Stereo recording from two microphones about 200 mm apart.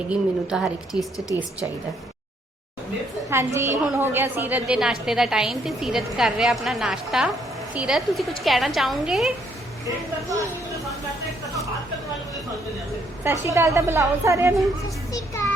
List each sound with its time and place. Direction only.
0.1 s a woman's voice: 5° right (ahead or behind)
3.2 s a woman's voice: 15° right (ahead or behind)
9.8 s a woman's voice: 15° right (ahead or behind)
13.2 s a woman's voice: 15° right (ahead or behind)